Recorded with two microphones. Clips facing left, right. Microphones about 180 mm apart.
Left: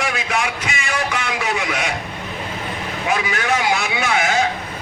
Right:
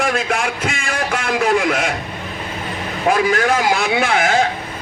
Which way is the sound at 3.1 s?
50° right (ahead or behind).